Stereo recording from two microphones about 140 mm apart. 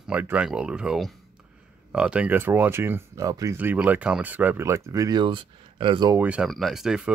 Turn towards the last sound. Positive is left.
turn(degrees=-5)  # may be behind; listen again after turning